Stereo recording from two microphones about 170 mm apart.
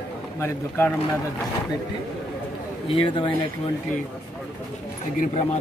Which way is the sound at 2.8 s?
30° left (ahead or behind).